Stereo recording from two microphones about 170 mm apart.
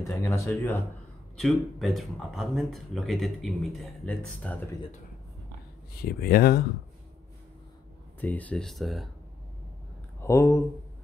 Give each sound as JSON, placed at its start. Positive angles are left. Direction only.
{"t": 0.1, "sound": "speech", "side_deg": 15}
{"t": 1.3, "sound": "speech", "side_deg": 0}
{"t": 6.0, "sound": "speech", "side_deg": 65}
{"t": 8.2, "sound": "speech", "side_deg": 10}
{"t": 10.2, "sound": "speech", "side_deg": 15}